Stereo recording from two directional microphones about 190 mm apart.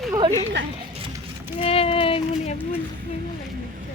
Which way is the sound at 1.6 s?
30° left (ahead or behind).